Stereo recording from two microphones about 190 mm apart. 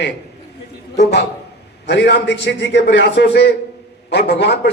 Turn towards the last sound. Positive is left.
turn(degrees=60)  # may be behind; listen again after turning